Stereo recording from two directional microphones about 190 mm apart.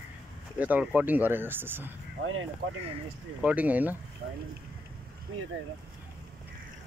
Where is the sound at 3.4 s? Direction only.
5° right (ahead or behind).